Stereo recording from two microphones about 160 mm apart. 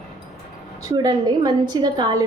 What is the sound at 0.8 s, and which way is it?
A woman's voice, 25° right (ahead or behind).